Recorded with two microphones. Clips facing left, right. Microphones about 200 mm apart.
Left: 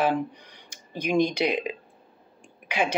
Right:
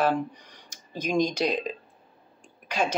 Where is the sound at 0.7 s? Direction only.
55° left (ahead or behind).